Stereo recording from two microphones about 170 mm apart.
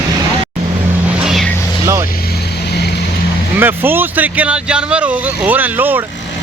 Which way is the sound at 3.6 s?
10° right (ahead or behind).